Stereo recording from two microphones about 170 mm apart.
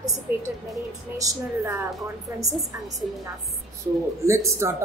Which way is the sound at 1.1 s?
15° right (ahead or behind).